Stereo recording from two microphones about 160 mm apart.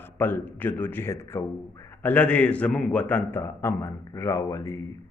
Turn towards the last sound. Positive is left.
turn(degrees=20)  # may be behind; listen again after turning